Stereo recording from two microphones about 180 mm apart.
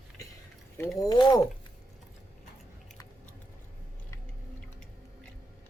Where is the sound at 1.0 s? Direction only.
25° left (ahead or behind).